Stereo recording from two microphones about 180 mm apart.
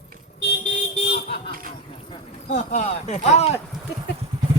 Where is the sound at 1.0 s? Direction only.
60° left (ahead or behind).